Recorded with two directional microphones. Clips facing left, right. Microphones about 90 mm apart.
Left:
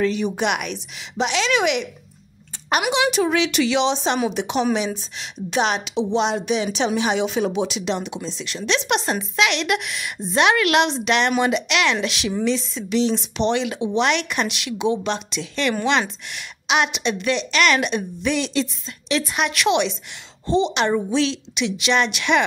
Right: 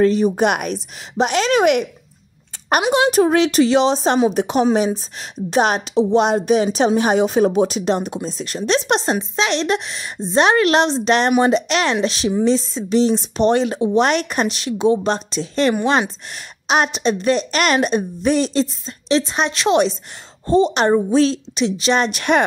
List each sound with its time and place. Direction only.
0.0 s a woman's voice: 40° right (ahead or behind)
3.0 s a woman's voice: 40° right (ahead or behind)